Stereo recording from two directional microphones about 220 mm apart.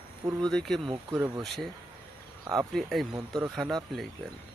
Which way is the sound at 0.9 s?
15° right (ahead or behind).